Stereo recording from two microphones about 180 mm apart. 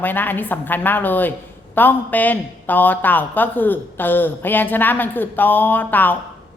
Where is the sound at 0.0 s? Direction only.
10° left (ahead or behind).